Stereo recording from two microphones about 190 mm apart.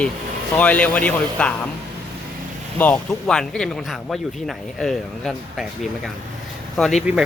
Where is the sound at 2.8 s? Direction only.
5° left (ahead or behind).